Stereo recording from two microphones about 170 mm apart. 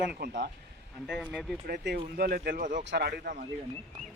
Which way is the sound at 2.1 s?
65° right (ahead or behind).